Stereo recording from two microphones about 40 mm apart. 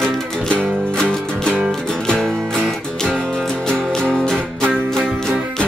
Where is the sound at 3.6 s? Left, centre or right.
Centre.